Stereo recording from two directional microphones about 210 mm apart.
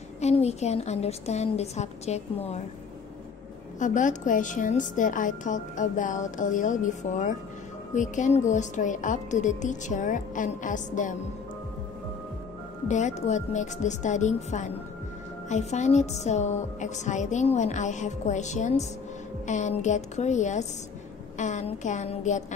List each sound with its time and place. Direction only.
0.2 s a woman's voice: 30° left (ahead or behind)
3.8 s a woman's voice: 35° left (ahead or behind)
12.8 s a woman's voice: 35° left (ahead or behind)